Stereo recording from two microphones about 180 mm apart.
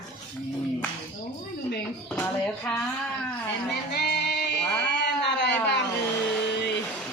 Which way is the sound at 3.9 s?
65° left (ahead or behind).